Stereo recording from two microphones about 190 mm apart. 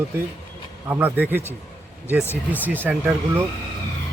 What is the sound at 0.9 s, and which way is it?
Speech, 10° right (ahead or behind).